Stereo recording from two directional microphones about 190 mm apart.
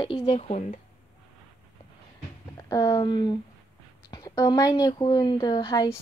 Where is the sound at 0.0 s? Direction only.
25° left (ahead or behind).